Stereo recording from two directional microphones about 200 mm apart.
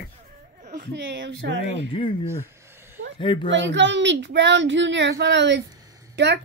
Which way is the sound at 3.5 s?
65° right (ahead or behind).